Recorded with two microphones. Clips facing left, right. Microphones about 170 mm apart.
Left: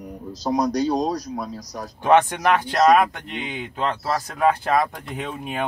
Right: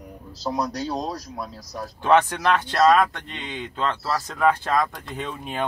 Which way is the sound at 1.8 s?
15° left (ahead or behind).